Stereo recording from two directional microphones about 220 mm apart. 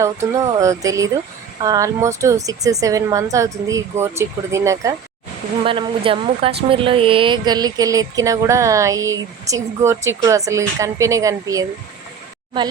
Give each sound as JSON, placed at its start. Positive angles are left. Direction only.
{"t": 0.0, "sound": "a woman's voice", "side_deg": -15}
{"t": 5.6, "sound": "a woman's voice", "side_deg": -25}